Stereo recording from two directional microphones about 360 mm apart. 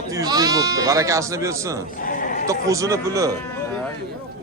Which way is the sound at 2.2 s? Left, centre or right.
Left.